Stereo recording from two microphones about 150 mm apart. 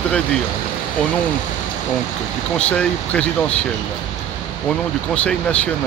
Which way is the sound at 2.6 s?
10° left (ahead or behind).